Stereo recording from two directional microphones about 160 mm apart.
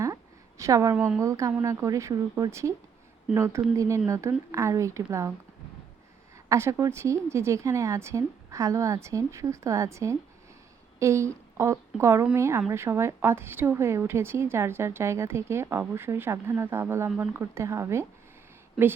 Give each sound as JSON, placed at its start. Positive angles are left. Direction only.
{"t": 0.6, "sound": "speech", "side_deg": -20}
{"t": 0.9, "sound": "a woman's voice", "side_deg": -10}
{"t": 1.2, "sound": "a woman's voice", "side_deg": -20}
{"t": 6.5, "sound": "a woman's voice", "side_deg": -20}